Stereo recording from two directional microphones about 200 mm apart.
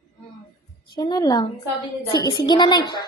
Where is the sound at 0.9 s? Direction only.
20° left (ahead or behind).